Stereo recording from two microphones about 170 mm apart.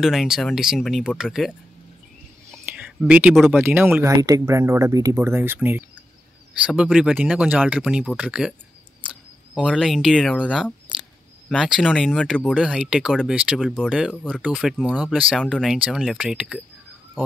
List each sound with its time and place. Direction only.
0.0 s speech: centre (ahead or behind)
2.8 s speech: 10° right (ahead or behind)
10.5 s a sound: centre (ahead or behind)
11.9 s speech: 5° left (ahead or behind)